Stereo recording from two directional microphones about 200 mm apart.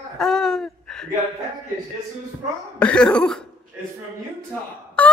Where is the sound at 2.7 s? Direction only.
5° left (ahead or behind).